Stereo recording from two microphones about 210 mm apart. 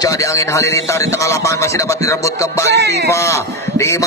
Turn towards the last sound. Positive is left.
turn(degrees=15)  # may be behind; listen again after turning